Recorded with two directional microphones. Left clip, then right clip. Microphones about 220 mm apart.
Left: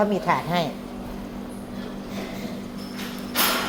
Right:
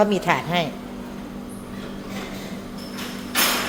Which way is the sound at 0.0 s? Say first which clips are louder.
Right 3 dB; 15° right (ahead or behind).